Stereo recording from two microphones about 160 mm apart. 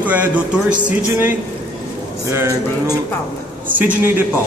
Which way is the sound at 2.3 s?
15° right (ahead or behind).